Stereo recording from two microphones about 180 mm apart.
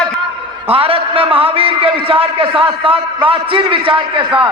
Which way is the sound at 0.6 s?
30° right (ahead or behind).